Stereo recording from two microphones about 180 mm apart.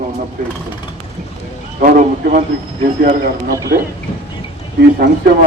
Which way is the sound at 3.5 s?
20° right (ahead or behind).